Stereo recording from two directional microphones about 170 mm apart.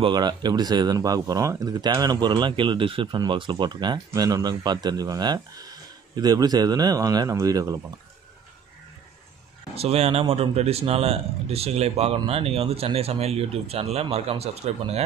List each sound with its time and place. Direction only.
0.0 s speech: 25° right (ahead or behind)
9.8 s speech: 35° right (ahead or behind)